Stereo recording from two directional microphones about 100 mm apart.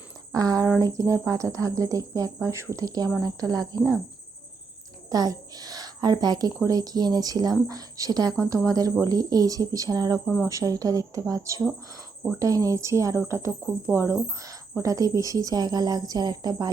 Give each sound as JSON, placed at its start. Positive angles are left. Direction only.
{"t": 0.3, "sound": "a woman's voice", "side_deg": -35}
{"t": 5.0, "sound": "a woman's voice", "side_deg": -40}